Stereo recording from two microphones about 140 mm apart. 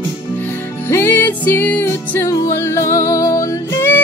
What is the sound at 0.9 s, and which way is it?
Music, 15° left (ahead or behind).